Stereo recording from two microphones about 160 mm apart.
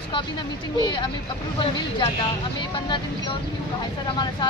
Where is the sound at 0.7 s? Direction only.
30° left (ahead or behind).